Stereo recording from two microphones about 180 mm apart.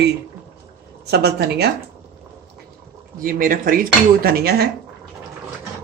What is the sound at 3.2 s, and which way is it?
Dishes, 50° right (ahead or behind).